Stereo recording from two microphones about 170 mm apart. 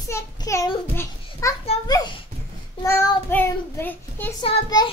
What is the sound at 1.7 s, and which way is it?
Speech, 35° left (ahead or behind).